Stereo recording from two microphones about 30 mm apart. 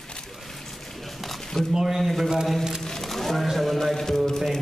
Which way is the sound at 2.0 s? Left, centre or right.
Centre.